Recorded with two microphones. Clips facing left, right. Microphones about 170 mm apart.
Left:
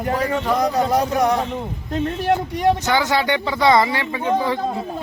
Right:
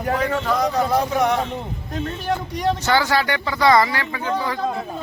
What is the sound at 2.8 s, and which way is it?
A woman's voice, 15° left (ahead or behind).